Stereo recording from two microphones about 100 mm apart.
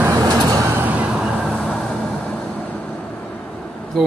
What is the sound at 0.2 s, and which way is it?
Vehicle, 40° right (ahead or behind).